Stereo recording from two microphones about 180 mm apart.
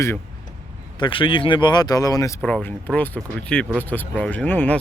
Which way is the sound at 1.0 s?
25° left (ahead or behind).